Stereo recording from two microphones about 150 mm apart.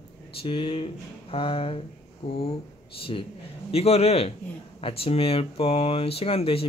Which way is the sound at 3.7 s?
45° left (ahead or behind).